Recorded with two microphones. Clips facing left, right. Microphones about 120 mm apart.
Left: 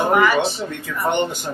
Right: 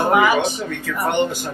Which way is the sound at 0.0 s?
5° right (ahead or behind).